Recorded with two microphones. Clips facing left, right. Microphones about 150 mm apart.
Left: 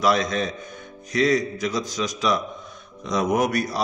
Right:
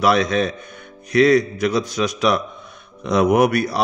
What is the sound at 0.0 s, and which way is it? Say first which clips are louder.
A man's voice: right 4 dB; 65° right (ahead or behind).